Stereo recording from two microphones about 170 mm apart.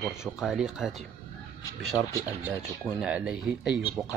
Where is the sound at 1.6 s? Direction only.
20° left (ahead or behind).